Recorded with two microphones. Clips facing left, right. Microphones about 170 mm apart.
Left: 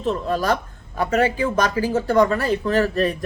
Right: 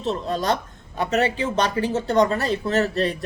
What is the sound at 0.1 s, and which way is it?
A man's voice, 30° right (ahead or behind).